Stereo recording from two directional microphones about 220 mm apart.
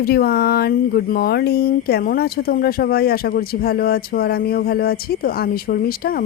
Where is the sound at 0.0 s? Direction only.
45° left (ahead or behind).